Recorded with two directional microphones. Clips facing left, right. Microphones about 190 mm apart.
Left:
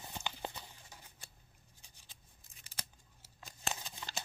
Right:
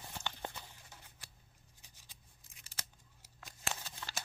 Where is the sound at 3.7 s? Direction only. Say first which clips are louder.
Left 1 dB; 15° left (ahead or behind).